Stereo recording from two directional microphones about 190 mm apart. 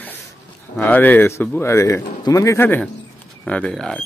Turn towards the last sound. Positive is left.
turn(degrees=5)  # may be behind; listen again after turning